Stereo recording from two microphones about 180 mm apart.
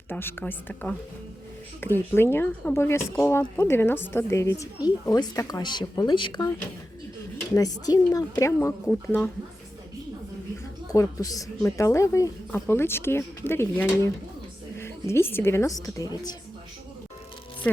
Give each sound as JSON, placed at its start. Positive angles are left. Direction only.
{"t": 0.1, "sound": "speech", "side_deg": 10}
{"t": 7.5, "sound": "a woman's voice", "side_deg": 20}
{"t": 10.9, "sound": "a woman's voice", "side_deg": 20}